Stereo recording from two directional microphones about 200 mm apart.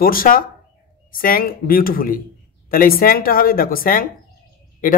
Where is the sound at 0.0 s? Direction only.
45° left (ahead or behind).